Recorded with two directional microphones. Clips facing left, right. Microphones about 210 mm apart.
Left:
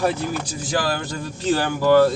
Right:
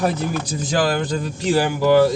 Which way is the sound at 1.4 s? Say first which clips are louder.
Right 1 dB; 10° right (ahead or behind).